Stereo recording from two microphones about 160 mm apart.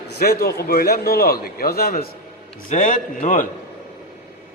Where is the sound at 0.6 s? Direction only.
70° left (ahead or behind).